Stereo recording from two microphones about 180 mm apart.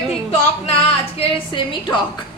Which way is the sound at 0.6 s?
35° left (ahead or behind).